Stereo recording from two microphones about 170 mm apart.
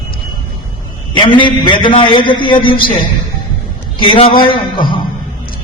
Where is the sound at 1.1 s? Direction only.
30° left (ahead or behind).